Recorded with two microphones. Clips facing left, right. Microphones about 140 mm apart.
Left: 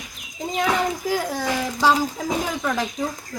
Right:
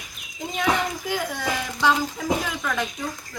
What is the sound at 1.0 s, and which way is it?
Speech, 35° left (ahead or behind).